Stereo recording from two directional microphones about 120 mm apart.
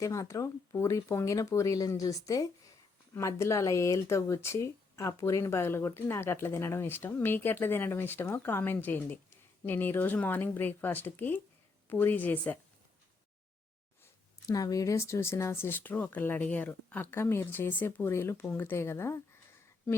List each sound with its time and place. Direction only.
0.0 s speech: 25° left (ahead or behind)
14.0 s speech: 30° left (ahead or behind)